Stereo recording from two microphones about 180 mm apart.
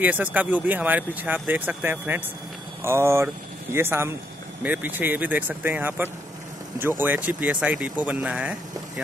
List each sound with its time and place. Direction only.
0.0 s speech: 10° right (ahead or behind)